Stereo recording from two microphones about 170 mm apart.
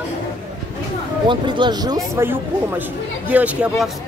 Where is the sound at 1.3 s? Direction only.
25° right (ahead or behind).